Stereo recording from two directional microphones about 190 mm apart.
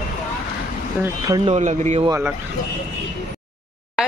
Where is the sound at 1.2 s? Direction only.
25° right (ahead or behind).